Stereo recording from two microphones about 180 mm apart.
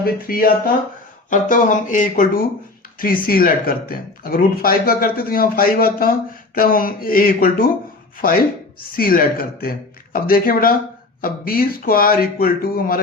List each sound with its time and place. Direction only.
0.0 s speech: 55° left (ahead or behind)